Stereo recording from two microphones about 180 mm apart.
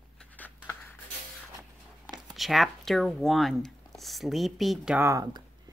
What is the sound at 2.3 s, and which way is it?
Speech, centre (ahead or behind).